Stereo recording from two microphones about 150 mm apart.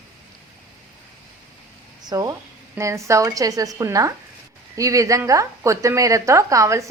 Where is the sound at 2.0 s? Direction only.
25° right (ahead or behind).